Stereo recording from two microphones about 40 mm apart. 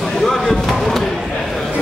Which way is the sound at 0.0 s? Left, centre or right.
Centre.